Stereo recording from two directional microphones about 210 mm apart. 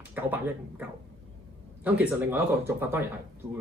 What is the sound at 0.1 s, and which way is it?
Speech, 10° right (ahead or behind).